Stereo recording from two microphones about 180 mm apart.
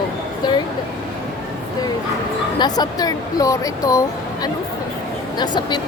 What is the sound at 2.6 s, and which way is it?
Speech, 20° left (ahead or behind).